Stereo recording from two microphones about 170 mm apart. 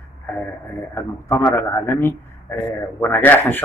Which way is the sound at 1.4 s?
10° left (ahead or behind).